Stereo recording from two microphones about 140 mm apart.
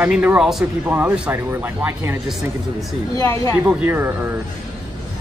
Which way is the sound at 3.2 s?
25° left (ahead or behind).